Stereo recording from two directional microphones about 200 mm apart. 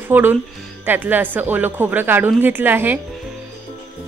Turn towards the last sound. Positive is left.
turn(degrees=-10)  # may be behind; listen again after turning